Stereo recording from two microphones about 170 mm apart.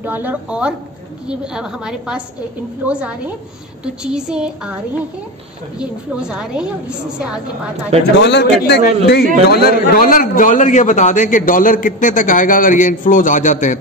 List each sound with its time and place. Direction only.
0.0 s a woman's voice: 10° right (ahead or behind)
5.8 s a woman's voice: 5° right (ahead or behind)
8.2 s a man's voice: 90° left
9.5 s a man's voice: 65° left (ahead or behind); by 13.7 s 45° left (ahead or behind)